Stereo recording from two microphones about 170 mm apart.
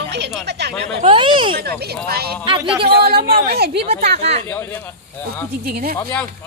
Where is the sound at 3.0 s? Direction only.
65° right (ahead or behind).